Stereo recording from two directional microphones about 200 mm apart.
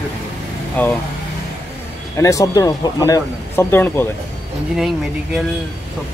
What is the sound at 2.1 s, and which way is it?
Speech, 15° left (ahead or behind).